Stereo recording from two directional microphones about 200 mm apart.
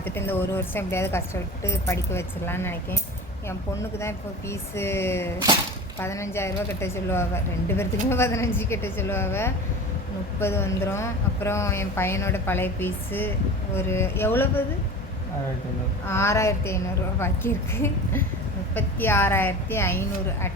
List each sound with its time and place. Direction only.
0.0 s a woman's voice: 10° left (ahead or behind)
16.0 s a woman's voice: 15° left (ahead or behind)